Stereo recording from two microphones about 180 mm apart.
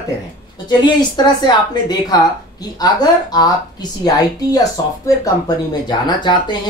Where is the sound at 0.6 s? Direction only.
25° left (ahead or behind).